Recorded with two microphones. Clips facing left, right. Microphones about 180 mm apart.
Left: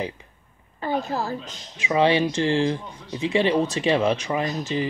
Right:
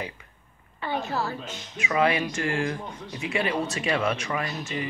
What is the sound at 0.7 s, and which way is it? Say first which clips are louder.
A woman's voice: left 3 dB; 40° left (ahead or behind).